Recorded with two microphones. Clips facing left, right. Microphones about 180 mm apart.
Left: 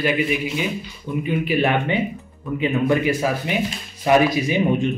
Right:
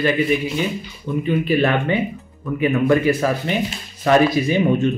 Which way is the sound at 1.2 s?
15° left (ahead or behind).